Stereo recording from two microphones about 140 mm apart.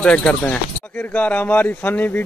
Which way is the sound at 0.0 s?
10° left (ahead or behind).